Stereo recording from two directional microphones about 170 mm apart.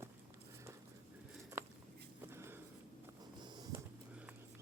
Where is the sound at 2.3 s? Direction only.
15° right (ahead or behind).